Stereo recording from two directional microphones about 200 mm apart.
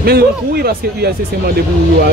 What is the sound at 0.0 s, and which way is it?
Speech, 50° right (ahead or behind).